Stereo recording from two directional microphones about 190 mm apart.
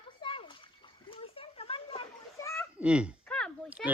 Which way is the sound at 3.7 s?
5° right (ahead or behind).